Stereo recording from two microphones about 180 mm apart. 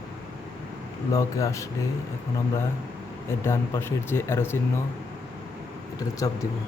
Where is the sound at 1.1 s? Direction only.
15° left (ahead or behind).